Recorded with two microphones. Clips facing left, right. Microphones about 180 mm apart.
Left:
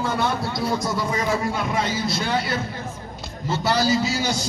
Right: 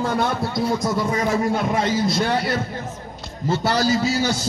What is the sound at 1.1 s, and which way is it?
Speech, 50° right (ahead or behind).